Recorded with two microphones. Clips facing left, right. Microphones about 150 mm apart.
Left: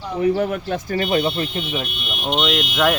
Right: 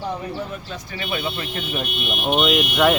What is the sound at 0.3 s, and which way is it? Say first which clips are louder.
Speech: left 9 dB; 65° left (ahead or behind).